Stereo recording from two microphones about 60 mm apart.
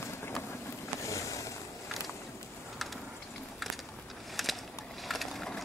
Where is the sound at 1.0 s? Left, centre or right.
Left.